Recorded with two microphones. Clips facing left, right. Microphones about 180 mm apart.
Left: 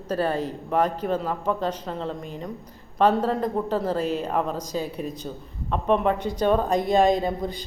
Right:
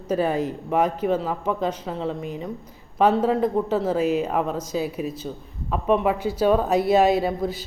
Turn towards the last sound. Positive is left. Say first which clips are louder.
# right 3 dB
turn(degrees=-5)  # may be behind; listen again after turning